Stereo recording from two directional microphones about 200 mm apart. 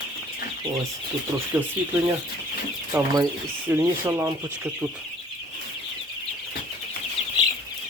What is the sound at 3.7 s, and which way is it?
Speech, 15° right (ahead or behind).